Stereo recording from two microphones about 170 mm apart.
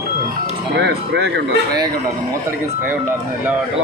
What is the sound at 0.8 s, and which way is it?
Speech, 80° right.